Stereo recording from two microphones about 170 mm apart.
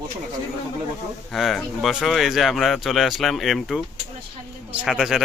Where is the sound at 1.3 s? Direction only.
Centre (ahead or behind).